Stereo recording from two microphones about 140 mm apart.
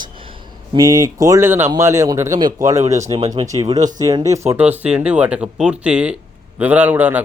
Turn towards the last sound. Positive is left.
turn(degrees=-15)  # may be behind; listen again after turning